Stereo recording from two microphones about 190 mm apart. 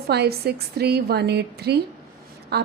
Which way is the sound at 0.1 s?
60° right (ahead or behind).